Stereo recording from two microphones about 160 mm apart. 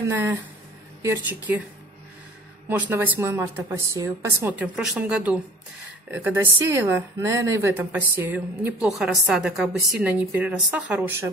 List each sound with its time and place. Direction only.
1.0 s a woman's voice: 15° right (ahead or behind)
2.8 s a woman's voice: 10° right (ahead or behind)